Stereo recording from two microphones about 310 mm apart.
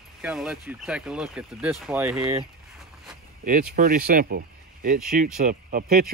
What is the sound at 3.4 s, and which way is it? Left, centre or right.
Speech, right.